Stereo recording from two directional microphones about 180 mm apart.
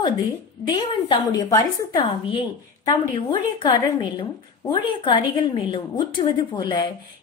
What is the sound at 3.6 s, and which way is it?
A woman's voice, 25° left (ahead or behind).